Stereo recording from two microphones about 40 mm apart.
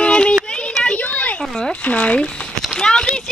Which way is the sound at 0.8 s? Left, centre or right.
Left.